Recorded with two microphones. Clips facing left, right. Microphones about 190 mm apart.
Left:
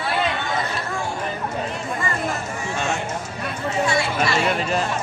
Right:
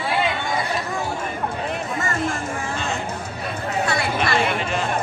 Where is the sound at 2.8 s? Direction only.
60° right (ahead or behind).